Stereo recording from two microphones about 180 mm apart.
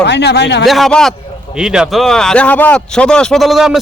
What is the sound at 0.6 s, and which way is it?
A man's voice, centre (ahead or behind).